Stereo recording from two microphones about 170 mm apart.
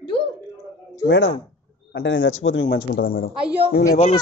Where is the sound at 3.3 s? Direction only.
5° right (ahead or behind).